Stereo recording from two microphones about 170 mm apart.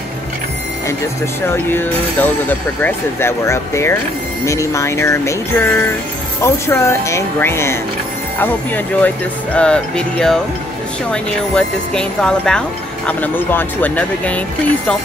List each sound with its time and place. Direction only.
1.5 s speech: 15° left (ahead or behind)